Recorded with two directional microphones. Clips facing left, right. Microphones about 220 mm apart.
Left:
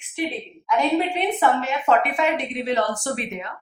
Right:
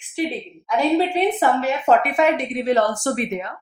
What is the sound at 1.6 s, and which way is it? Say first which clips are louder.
A woman's voice: right 3 dB; 35° right (ahead or behind).